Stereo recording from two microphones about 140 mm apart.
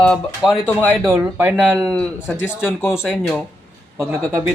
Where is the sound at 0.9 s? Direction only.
20° right (ahead or behind).